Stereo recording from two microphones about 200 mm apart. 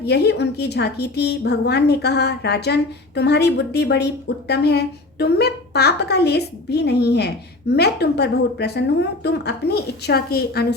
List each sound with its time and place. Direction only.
0.0 s a woman's voice: 55° left (ahead or behind)